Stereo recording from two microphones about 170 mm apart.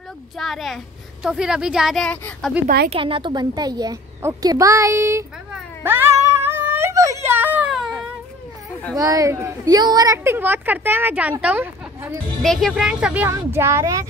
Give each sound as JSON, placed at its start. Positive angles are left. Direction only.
{"t": 0.4, "sound": "a woman's voice", "side_deg": 0}
{"t": 2.9, "sound": "speech", "side_deg": -30}
{"t": 5.9, "sound": "a sound", "side_deg": -15}
{"t": 8.9, "sound": "a woman's voice", "side_deg": -20}
{"t": 12.4, "sound": "a woman's voice", "side_deg": 0}